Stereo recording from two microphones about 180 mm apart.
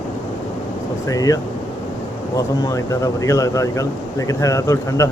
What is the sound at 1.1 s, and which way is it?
Speech, 20° left (ahead or behind).